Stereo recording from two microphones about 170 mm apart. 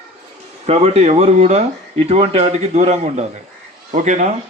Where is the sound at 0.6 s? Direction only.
40° right (ahead or behind).